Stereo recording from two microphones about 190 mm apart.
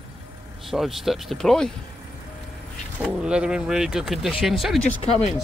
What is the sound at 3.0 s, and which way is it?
Speech, 5° right (ahead or behind).